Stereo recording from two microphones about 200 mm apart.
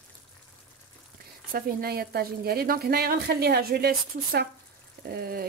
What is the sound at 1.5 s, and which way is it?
A woman's voice, 45° right (ahead or behind).